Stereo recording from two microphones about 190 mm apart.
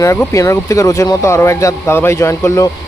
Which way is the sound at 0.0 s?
15° left (ahead or behind).